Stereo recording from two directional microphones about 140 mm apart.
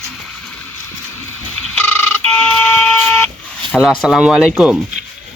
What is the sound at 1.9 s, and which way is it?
Alarm clock, 15° left (ahead or behind).